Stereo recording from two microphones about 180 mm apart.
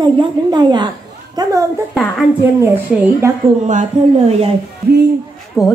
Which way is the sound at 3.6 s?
40° right (ahead or behind).